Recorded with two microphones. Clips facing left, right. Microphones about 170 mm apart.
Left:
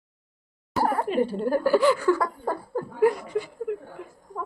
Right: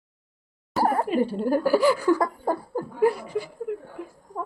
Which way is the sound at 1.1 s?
10° right (ahead or behind).